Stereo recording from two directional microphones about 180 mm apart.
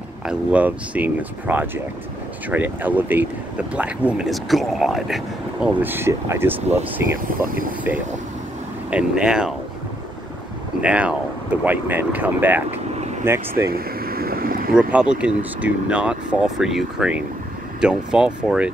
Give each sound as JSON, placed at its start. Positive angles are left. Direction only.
{"t": 0.2, "sound": "speech", "side_deg": -5}
{"t": 7.4, "sound": "speech", "side_deg": -50}
{"t": 8.9, "sound": "speech", "side_deg": -5}
{"t": 10.8, "sound": "speech", "side_deg": -5}
{"t": 13.7, "sound": "boat", "side_deg": -55}
{"t": 14.7, "sound": "speech", "side_deg": -5}